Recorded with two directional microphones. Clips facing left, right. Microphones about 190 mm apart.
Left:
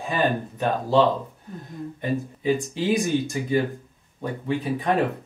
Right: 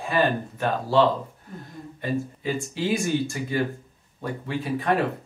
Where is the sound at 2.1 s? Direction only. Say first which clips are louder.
Left 3 dB; 20° left (ahead or behind).